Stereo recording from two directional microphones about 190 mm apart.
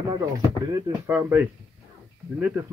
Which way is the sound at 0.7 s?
15° right (ahead or behind).